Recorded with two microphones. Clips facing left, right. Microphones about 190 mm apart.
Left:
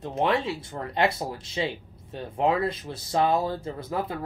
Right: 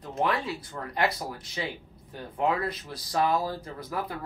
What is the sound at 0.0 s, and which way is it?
Speech, 25° left (ahead or behind).